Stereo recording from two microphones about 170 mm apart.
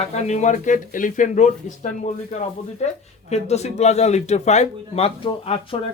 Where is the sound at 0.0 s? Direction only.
40° left (ahead or behind).